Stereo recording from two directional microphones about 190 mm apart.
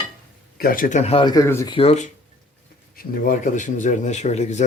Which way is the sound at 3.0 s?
45° left (ahead or behind).